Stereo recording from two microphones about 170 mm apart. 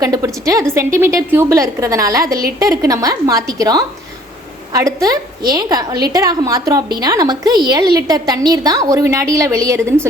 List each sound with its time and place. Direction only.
0.0 s a woman's voice: 20° right (ahead or behind)